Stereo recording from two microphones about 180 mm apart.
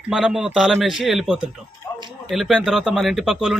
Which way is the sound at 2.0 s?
25° right (ahead or behind).